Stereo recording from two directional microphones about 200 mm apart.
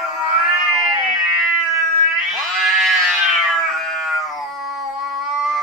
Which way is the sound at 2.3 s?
Centre (ahead or behind).